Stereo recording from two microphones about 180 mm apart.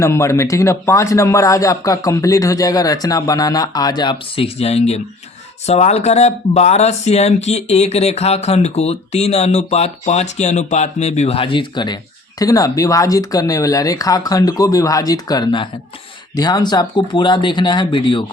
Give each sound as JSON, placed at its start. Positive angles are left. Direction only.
{"t": 0.0, "sound": "speech", "side_deg": 15}